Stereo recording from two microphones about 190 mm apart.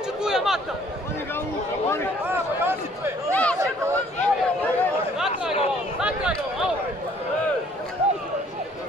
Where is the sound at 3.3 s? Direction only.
5° left (ahead or behind).